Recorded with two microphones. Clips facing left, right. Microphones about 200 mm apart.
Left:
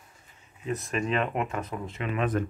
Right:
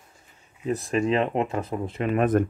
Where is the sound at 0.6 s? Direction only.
35° right (ahead or behind).